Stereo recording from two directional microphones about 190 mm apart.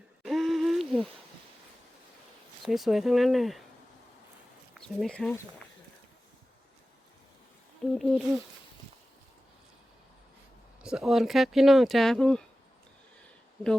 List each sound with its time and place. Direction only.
0.2 s a sound: centre (ahead or behind)
2.6 s speech: centre (ahead or behind)
4.7 s speech: centre (ahead or behind)
7.9 s speech: centre (ahead or behind)
10.8 s speech: 5° right (ahead or behind)